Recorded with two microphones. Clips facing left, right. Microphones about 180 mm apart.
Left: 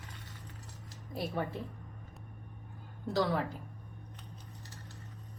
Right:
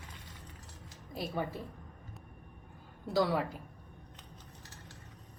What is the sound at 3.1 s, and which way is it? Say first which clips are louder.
Speech: right 1 dB; 10° right (ahead or behind).